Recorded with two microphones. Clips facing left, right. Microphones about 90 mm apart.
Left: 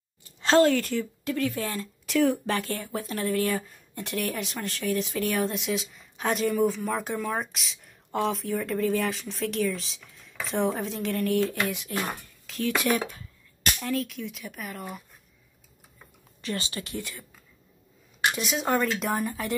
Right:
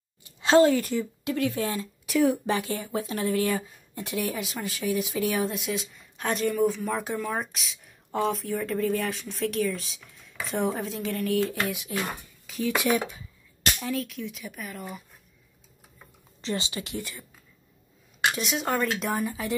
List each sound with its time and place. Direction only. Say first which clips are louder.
0.4 s a woman's voice: right 1 dB; 10° right (ahead or behind)
1.6 s speech: right 3 dB; 5° right (ahead or behind)
16.3 s speech: right 2 dB; 25° right (ahead or behind)
17.0 s speech: even; 5° right (ahead or behind)
18.3 s speech: left 4 dB; centre (ahead or behind)